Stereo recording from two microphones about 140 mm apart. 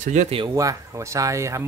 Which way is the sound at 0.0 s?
60° right (ahead or behind).